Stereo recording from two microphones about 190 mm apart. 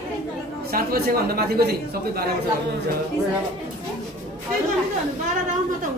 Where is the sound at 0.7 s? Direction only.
50° right (ahead or behind).